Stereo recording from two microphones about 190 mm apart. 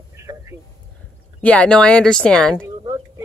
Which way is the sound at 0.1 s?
15° right (ahead or behind).